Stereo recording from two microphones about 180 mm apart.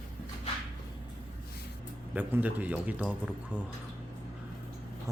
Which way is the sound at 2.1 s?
10° right (ahead or behind).